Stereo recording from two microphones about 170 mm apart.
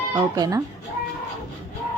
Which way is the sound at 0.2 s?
20° right (ahead or behind).